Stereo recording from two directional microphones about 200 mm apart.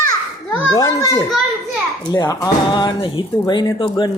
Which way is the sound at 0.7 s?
15° left (ahead or behind).